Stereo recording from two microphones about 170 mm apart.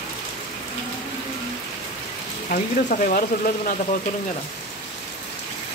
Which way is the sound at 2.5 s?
55° left (ahead or behind).